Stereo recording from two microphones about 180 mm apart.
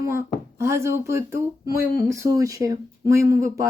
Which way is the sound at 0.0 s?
15° right (ahead or behind).